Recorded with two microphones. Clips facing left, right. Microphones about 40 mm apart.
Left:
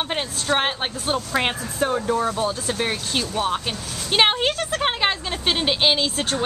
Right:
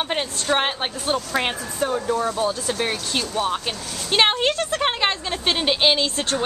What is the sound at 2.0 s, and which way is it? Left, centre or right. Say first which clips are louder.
A woman's voice: even; centre.